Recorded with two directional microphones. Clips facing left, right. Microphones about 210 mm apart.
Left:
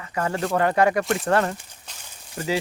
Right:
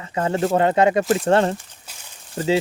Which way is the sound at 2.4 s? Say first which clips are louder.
Right 6 dB; 30° right (ahead or behind).